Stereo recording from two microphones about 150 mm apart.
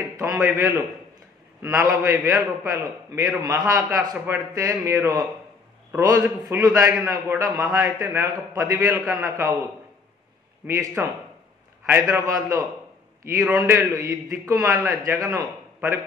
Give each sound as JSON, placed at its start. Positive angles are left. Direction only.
{"t": 0.2, "sound": "a man's voice", "side_deg": -15}
{"t": 10.7, "sound": "a man's voice", "side_deg": -20}
{"t": 13.7, "sound": "a man's voice", "side_deg": -20}